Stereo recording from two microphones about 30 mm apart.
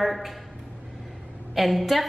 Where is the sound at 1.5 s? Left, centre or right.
Centre.